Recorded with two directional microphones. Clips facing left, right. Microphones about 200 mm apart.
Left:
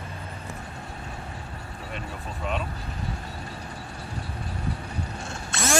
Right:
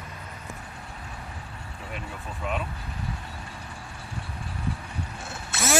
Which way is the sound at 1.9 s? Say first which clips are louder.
Left 1 dB; 10° right (ahead or behind).